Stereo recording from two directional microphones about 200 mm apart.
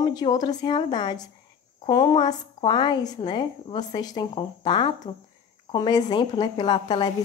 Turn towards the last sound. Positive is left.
turn(degrees=20)  # may be behind; listen again after turning